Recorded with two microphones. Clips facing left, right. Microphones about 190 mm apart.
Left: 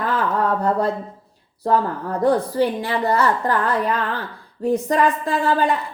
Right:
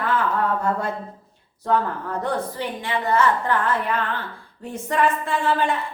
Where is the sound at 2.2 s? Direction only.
35° left (ahead or behind).